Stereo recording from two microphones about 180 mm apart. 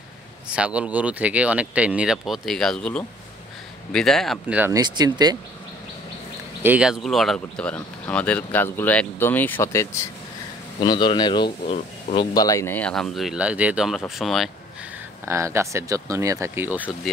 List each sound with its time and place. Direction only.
0.5 s speech: 5° right (ahead or behind)
4.7 s speech: 25° right (ahead or behind)
6.6 s speech: 5° right (ahead or behind); by 12.3 s 30° left (ahead or behind)
12.4 s speech: 15° left (ahead or behind); by 14.5 s centre (ahead or behind)
15.2 s speech: 15° right (ahead or behind)